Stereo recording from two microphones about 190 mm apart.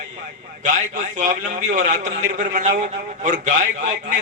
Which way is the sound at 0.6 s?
40° right (ahead or behind).